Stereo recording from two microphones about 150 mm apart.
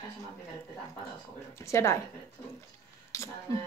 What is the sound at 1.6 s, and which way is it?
Speech, 20° left (ahead or behind).